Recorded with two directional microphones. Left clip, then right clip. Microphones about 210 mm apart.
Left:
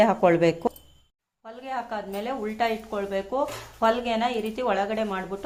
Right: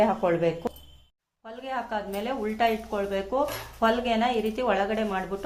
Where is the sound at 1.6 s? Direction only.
15° left (ahead or behind).